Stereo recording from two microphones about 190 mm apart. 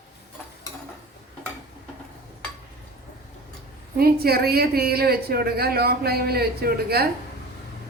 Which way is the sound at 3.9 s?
55° right (ahead or behind).